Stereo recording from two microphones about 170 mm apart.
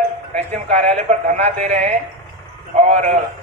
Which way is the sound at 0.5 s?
40° right (ahead or behind).